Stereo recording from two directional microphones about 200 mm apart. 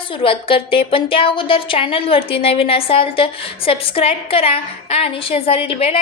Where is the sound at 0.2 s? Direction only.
25° left (ahead or behind).